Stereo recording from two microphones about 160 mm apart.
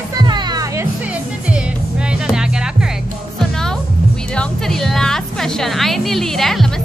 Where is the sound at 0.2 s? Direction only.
25° right (ahead or behind).